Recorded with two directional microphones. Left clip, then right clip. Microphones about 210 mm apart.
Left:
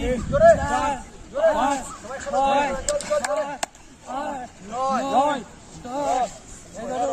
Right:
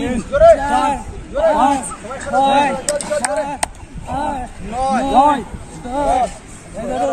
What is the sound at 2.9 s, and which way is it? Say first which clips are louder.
Speech: right 4 dB; 15° left (ahead or behind).